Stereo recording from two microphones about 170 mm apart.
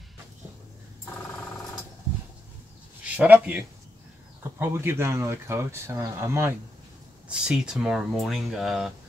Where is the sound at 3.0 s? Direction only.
10° right (ahead or behind).